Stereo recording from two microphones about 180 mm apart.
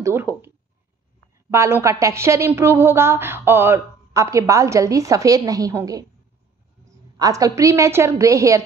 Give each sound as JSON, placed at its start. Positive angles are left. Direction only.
{"t": 0.0, "sound": "a woman's voice", "side_deg": -10}
{"t": 1.5, "sound": "a woman's voice", "side_deg": -15}
{"t": 7.2, "sound": "a woman's voice", "side_deg": -20}